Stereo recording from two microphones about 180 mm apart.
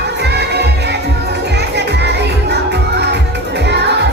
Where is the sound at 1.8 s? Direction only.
70° right (ahead or behind).